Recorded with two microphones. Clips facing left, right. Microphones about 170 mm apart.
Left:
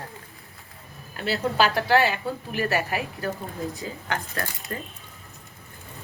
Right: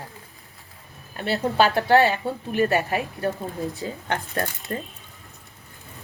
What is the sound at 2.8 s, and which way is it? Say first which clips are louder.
Speech: right 3 dB; 30° right (ahead or behind).